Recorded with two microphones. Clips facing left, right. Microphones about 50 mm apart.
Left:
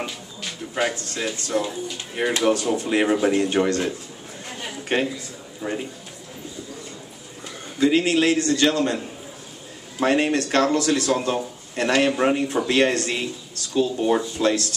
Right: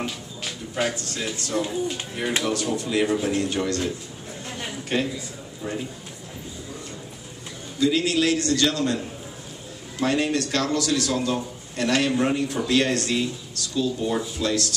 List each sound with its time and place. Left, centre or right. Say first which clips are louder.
0.0 s music: even; centre
1.2 s speech: left 2 dB; centre
2.4 s a man's voice: left 5 dB; left
7.8 s a man's voice: left 3 dB; left
10.0 s a man's voice: left 3 dB; left